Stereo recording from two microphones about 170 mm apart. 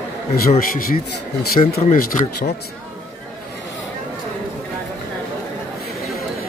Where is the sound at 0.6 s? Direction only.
55° left (ahead or behind).